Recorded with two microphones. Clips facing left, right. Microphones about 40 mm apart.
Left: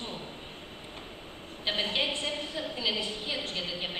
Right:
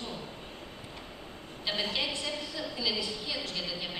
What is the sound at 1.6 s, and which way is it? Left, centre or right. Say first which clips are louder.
A woman's voice: left 3 dB; left.